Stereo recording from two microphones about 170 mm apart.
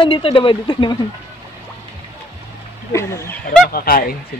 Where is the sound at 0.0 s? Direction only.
30° left (ahead or behind).